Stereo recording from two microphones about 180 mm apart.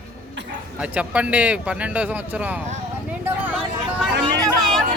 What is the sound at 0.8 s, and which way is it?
Speech, 5° right (ahead or behind).